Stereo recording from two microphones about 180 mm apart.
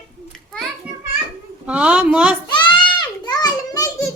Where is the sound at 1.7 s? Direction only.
5° right (ahead or behind).